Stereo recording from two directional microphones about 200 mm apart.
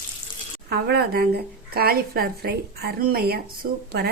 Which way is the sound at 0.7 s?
50° right (ahead or behind).